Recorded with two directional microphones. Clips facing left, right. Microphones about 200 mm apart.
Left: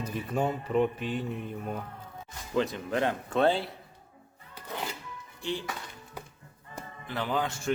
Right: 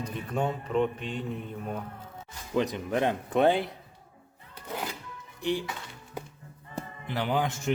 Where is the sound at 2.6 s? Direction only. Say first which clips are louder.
Right 1 dB; 15° right (ahead or behind).